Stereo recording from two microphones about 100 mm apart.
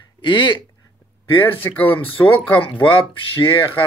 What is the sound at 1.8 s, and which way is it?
Speech, 65° left (ahead or behind).